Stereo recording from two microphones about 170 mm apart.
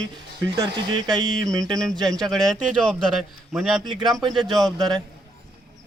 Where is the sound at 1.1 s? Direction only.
25° right (ahead or behind).